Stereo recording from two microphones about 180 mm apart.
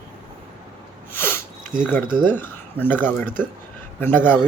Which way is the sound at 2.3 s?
10° left (ahead or behind).